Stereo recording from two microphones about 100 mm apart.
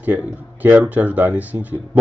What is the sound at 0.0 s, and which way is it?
A man's voice, 15° right (ahead or behind).